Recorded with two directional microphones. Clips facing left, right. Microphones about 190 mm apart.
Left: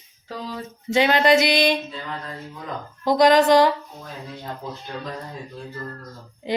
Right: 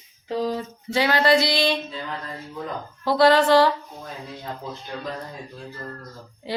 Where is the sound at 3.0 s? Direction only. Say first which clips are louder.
Left 1 dB; 15° left (ahead or behind).